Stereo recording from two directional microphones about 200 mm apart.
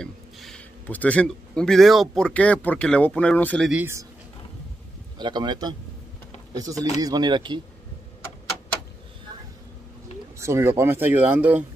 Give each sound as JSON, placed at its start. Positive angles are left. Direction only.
{"t": 0.0, "sound": "a man's voice", "side_deg": 5}
{"t": 3.7, "sound": "speech", "side_deg": -10}
{"t": 5.2, "sound": "speech", "side_deg": -20}
{"t": 10.4, "sound": "speech", "side_deg": -10}